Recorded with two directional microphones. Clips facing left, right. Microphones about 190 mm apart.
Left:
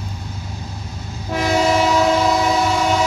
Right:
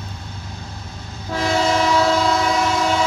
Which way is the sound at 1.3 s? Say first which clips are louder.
Left 2 dB; 15° left (ahead or behind).